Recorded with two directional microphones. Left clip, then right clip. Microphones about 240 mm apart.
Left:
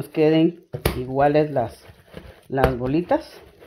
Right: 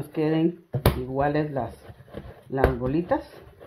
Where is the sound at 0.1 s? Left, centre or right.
Left.